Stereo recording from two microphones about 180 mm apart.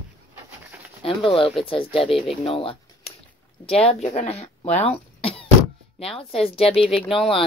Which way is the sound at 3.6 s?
35° left (ahead or behind).